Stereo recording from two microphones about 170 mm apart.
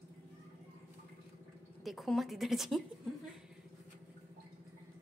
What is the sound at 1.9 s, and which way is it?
Speech, centre (ahead or behind).